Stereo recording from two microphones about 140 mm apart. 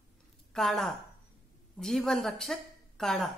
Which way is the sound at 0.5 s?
5° left (ahead or behind).